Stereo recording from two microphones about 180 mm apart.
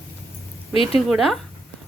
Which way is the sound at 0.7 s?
30° left (ahead or behind).